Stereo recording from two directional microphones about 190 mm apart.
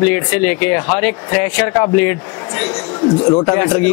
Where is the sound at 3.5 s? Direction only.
5° left (ahead or behind).